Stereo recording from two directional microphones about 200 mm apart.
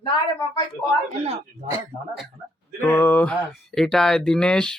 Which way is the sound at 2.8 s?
10° left (ahead or behind).